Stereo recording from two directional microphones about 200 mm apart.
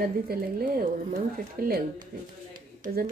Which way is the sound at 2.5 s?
45° right (ahead or behind).